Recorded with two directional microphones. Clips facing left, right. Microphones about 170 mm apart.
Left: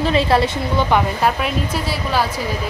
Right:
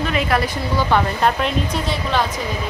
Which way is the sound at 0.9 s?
5° left (ahead or behind).